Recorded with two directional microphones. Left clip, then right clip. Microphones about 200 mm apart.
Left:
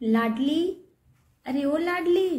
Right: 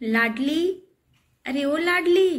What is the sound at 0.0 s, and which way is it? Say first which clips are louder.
A woman's voice: right 3 dB; 5° left (ahead or behind).